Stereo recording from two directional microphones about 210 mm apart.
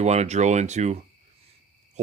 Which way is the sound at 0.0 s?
30° right (ahead or behind).